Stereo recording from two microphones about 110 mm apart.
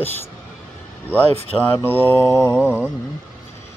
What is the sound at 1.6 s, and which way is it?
Mantra, 20° left (ahead or behind).